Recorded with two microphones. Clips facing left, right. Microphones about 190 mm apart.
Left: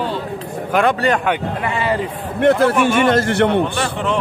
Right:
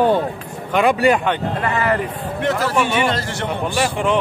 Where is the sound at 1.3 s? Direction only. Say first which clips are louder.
Even; 15° left (ahead or behind).